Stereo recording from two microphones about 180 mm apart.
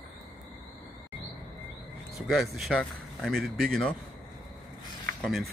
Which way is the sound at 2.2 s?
Centre (ahead or behind).